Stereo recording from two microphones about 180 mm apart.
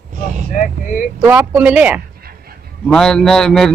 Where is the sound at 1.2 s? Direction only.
10° right (ahead or behind).